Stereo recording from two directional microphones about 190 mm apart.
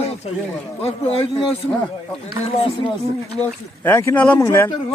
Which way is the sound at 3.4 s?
10° left (ahead or behind).